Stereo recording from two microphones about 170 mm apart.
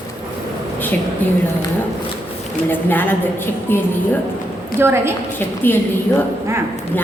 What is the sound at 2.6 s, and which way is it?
A woman's voice, 10° left (ahead or behind).